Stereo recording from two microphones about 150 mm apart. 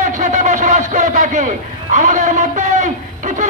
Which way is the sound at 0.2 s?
55° right (ahead or behind).